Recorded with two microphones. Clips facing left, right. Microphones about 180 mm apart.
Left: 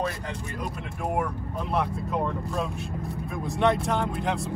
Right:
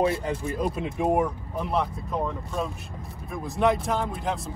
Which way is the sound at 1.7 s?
Centre (ahead or behind).